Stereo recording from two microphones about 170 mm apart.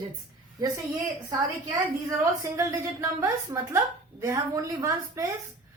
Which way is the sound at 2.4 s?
15° right (ahead or behind).